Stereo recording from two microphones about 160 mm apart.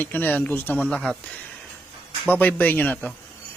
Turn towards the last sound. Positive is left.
turn(degrees=10)  # may be behind; listen again after turning